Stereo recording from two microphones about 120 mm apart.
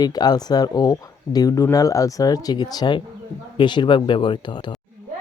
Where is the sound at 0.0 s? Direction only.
35° left (ahead or behind).